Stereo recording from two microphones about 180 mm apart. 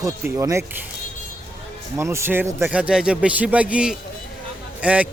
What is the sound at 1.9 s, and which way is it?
A man's voice, 15° right (ahead or behind).